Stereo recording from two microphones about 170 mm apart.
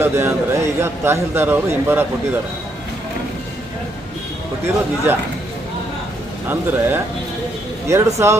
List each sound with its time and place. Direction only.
0.0 s a man's voice: 15° right (ahead or behind)
5.1 s a man's voice: 10° right (ahead or behind)
6.5 s a man's voice: 15° right (ahead or behind)